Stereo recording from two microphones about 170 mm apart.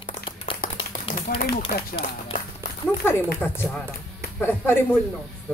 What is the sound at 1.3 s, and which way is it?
Speech, 65° left (ahead or behind).